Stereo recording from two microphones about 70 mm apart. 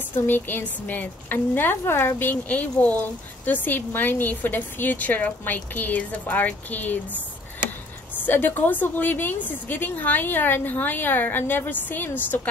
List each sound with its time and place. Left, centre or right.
0.3 s a woman's voice: left
8.3 s a woman's voice: left